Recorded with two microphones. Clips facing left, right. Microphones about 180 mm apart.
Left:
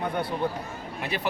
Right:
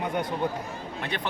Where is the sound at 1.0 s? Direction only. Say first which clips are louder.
Left 2 dB; 5° left (ahead or behind).